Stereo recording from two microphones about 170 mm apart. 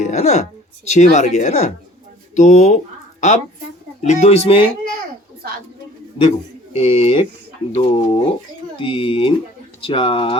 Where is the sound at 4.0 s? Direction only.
40° left (ahead or behind).